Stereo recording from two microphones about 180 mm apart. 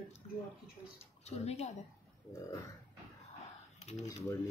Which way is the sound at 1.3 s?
35° left (ahead or behind).